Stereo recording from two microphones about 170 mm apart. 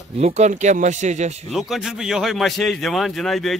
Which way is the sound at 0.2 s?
40° right (ahead or behind).